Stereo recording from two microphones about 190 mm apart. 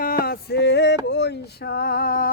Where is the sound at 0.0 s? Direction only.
50° left (ahead or behind).